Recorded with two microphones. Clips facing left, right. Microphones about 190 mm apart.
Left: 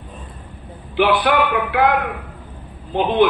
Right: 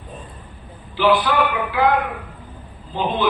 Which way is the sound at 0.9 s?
60° left (ahead or behind).